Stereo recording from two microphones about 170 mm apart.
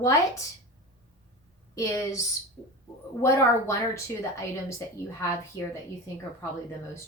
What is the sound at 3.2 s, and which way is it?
Speech, 15° left (ahead or behind).